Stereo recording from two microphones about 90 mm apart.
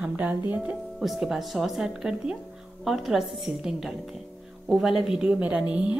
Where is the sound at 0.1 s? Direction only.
20° right (ahead or behind).